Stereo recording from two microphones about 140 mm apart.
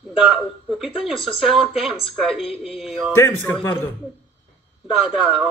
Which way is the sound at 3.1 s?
15° left (ahead or behind).